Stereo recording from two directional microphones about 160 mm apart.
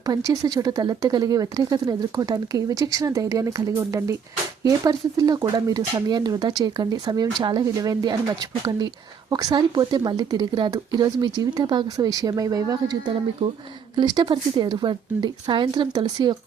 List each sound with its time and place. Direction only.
0.0 s speech: 20° right (ahead or behind)